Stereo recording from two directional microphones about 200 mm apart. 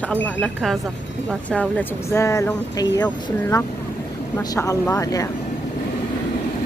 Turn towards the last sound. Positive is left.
turn(degrees=15)  # may be behind; listen again after turning